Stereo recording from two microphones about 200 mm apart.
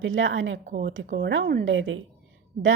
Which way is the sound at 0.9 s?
60° right (ahead or behind).